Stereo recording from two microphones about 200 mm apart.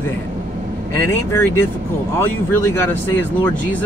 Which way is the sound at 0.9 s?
15° left (ahead or behind).